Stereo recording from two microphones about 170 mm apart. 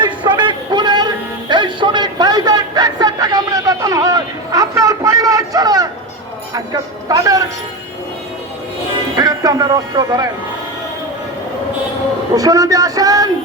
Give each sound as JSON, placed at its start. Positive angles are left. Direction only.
{"t": 0.0, "sound": "music", "side_deg": -25}
{"t": 7.1, "sound": "music", "side_deg": -20}
{"t": 9.1, "sound": "speech", "side_deg": -20}
{"t": 12.3, "sound": "speech", "side_deg": -20}